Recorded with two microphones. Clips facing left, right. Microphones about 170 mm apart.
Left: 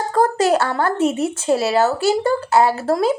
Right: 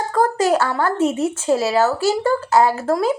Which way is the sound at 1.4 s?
20° left (ahead or behind).